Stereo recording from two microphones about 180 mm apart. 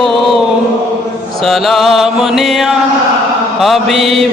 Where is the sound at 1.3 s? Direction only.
Centre (ahead or behind).